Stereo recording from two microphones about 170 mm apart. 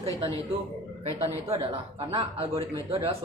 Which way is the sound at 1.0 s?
35° right (ahead or behind).